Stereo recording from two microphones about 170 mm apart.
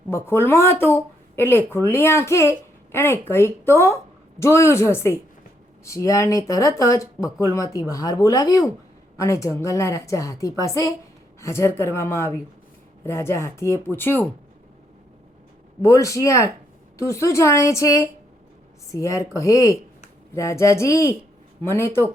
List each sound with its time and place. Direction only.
0.1 s speech: 15° left (ahead or behind)
15.8 s speech: 20° left (ahead or behind)